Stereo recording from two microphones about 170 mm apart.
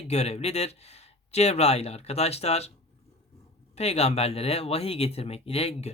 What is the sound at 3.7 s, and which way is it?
Speech, 40° left (ahead or behind).